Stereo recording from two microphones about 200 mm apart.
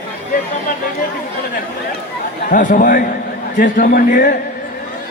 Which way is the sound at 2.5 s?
40° left (ahead or behind).